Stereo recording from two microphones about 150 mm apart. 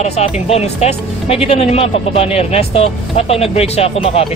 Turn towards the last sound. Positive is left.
turn(degrees=40)  # may be behind; listen again after turning